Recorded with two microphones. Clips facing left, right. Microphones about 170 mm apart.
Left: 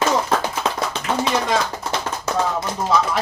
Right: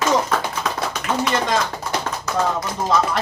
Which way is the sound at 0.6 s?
25° left (ahead or behind).